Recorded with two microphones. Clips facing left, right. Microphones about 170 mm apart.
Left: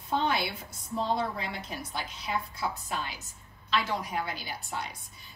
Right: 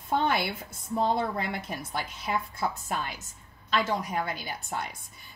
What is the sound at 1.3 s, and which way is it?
A woman's voice, 55° right (ahead or behind).